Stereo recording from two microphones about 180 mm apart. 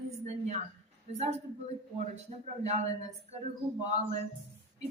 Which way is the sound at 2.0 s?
40° right (ahead or behind).